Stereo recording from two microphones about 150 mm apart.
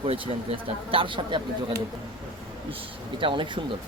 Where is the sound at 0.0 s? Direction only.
35° right (ahead or behind).